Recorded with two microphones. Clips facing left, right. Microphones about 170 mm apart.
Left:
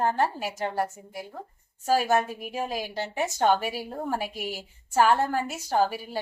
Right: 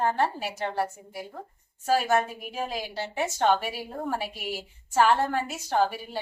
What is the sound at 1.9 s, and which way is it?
A woman's voice, 10° left (ahead or behind).